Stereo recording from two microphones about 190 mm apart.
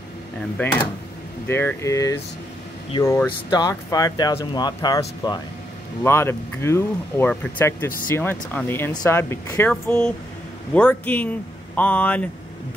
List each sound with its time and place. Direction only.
1.5 s speech: 15° left (ahead or behind)